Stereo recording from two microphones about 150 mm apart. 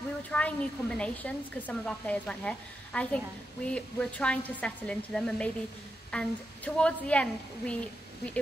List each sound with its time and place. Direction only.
0.3 s a woman's voice: 10° left (ahead or behind)